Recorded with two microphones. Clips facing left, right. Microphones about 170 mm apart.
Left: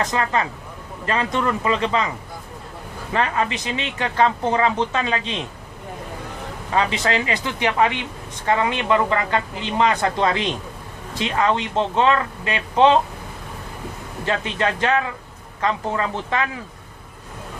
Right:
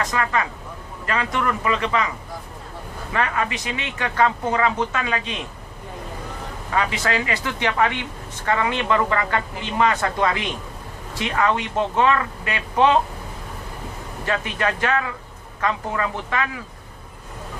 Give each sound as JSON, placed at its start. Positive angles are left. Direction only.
{"t": 0.0, "sound": "speech", "side_deg": 25}
{"t": 3.1, "sound": "speech", "side_deg": 25}
{"t": 6.7, "sound": "speech", "side_deg": 20}
{"t": 14.3, "sound": "speech", "side_deg": 25}